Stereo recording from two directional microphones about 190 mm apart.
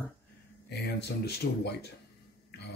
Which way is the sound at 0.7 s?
55° left (ahead or behind).